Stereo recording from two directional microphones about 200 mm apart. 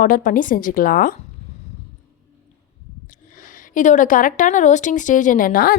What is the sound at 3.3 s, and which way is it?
A woman's voice, 40° left (ahead or behind).